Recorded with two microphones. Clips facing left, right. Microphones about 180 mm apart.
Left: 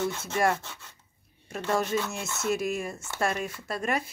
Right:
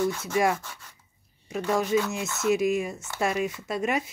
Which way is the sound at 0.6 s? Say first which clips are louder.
Right 1 dB; 25° left (ahead or behind).